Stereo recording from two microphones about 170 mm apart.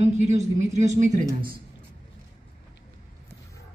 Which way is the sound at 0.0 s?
45° right (ahead or behind).